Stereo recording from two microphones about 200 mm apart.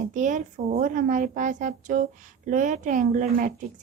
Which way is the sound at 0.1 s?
40° right (ahead or behind).